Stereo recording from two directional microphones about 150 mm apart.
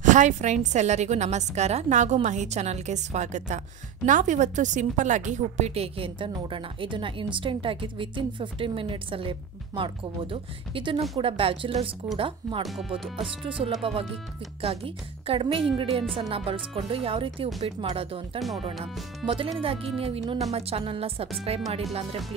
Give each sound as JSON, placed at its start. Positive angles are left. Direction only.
{"t": 0.0, "sound": "a woman's voice", "side_deg": -55}